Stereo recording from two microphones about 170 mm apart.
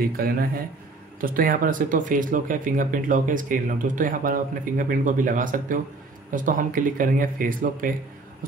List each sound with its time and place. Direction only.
0.0 s speech: 60° right (ahead or behind)